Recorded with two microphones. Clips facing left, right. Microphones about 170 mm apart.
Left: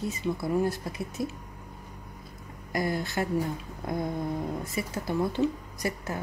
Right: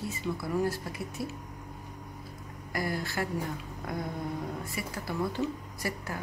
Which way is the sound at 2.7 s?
20° left (ahead or behind).